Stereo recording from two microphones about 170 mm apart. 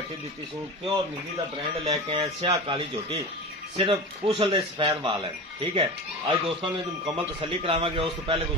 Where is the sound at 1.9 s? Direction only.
25° right (ahead or behind).